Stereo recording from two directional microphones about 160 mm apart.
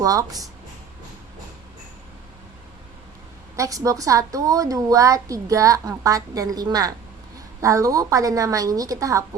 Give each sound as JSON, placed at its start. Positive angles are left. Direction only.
{"t": 0.0, "sound": "a woman's voice", "side_deg": -20}
{"t": 3.5, "sound": "a woman's voice", "side_deg": -20}